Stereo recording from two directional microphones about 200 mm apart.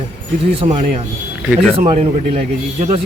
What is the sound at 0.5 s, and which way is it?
A man's voice, 25° right (ahead or behind).